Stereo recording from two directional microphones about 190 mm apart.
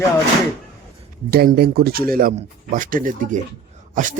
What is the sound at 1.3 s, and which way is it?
A man's voice, 55° right (ahead or behind).